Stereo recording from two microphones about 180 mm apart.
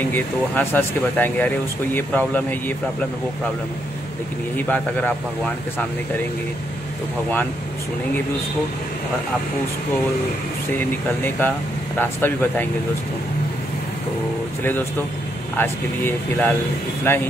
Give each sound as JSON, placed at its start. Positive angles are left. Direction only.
{"t": 0.1, "sound": "speech", "side_deg": 10}
{"t": 4.6, "sound": "speech", "side_deg": 10}
{"t": 10.8, "sound": "speech", "side_deg": 10}
{"t": 15.5, "sound": "speech", "side_deg": 10}